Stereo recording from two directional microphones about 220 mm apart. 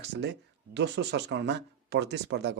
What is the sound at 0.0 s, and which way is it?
Speech, 50° right (ahead or behind).